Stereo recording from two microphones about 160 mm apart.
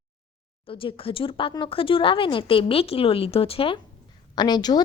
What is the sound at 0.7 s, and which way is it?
A woman's voice, 35° left (ahead or behind).